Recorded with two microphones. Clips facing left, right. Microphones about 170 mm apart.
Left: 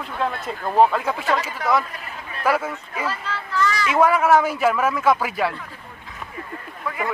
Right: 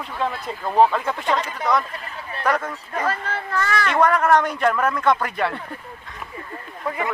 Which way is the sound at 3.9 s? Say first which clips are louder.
Left 1 dB; 5° left (ahead or behind).